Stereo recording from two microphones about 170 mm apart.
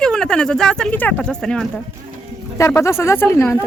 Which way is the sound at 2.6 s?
15° left (ahead or behind).